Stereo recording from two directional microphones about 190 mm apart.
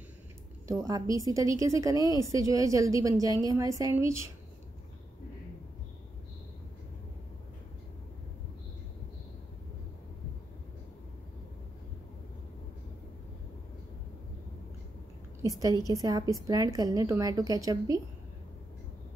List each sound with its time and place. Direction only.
0.7 s a woman's voice: 15° right (ahead or behind)
15.8 s a woman's voice: 20° right (ahead or behind)